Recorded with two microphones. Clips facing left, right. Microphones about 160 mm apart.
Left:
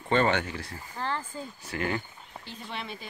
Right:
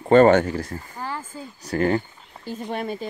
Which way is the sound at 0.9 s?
10° right (ahead or behind).